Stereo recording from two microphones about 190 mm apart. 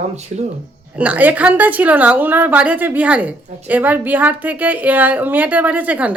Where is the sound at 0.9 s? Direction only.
10° right (ahead or behind).